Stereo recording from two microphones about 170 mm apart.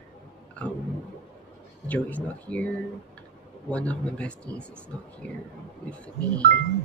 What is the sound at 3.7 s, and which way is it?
Speech, 5° left (ahead or behind).